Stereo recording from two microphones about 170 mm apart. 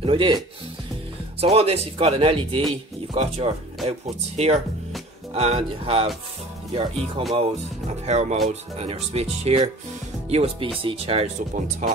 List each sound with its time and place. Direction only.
0.0 s speech: 30° right (ahead or behind)
1.4 s speech: 35° right (ahead or behind)